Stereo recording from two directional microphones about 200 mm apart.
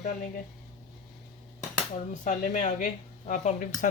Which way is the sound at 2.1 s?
35° left (ahead or behind).